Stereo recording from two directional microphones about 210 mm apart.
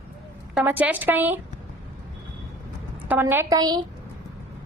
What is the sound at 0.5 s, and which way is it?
Speech, 10° right (ahead or behind).